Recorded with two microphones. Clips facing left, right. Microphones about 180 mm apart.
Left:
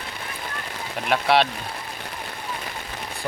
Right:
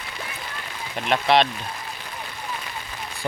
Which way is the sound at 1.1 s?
5° left (ahead or behind).